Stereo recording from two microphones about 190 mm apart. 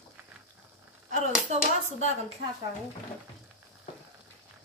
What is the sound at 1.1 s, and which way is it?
Speech, 35° right (ahead or behind).